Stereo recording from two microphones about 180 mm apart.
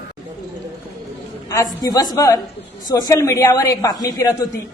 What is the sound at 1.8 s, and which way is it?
A woman's voice, 20° left (ahead or behind).